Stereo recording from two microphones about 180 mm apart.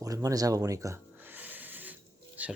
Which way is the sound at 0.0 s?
20° right (ahead or behind).